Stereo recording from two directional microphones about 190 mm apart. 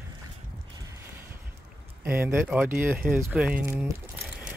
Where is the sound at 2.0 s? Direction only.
10° right (ahead or behind).